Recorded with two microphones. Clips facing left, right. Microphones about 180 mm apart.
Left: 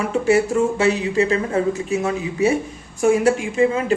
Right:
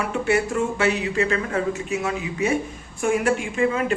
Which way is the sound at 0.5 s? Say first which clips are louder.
Left 4 dB; 35° left (ahead or behind).